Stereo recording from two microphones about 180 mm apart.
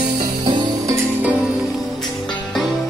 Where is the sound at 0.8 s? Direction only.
15° right (ahead or behind).